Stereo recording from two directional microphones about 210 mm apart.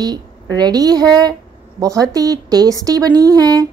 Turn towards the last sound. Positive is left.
turn(degrees=-15)  # may be behind; listen again after turning